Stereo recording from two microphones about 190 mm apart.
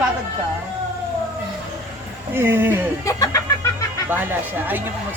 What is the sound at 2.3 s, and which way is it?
Speech, 10° right (ahead or behind).